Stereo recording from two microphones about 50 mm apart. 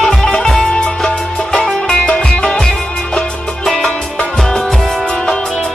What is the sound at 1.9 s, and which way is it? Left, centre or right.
Music, left.